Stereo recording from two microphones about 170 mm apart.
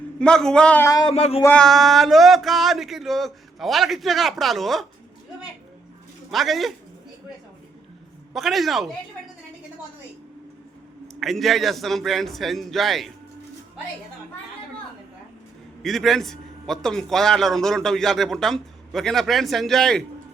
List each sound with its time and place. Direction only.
0.2 s a man's voice: 5° left (ahead or behind)
0.9 s speech: 25° left (ahead or behind)
1.1 s a sound: 35° left (ahead or behind)
1.5 s a man's voice: centre (ahead or behind)
6.3 s a man's voice: centre (ahead or behind)
8.3 s a man's voice: centre (ahead or behind)
11.1 s a man's voice: centre (ahead or behind)
15.8 s a man's voice: centre (ahead or behind)